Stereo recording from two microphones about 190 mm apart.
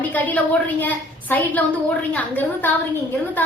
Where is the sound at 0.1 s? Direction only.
10° left (ahead or behind).